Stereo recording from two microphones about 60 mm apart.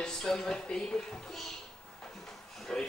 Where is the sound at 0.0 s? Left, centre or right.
Centre.